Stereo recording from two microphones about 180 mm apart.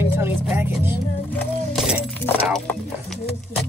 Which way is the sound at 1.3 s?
10° left (ahead or behind).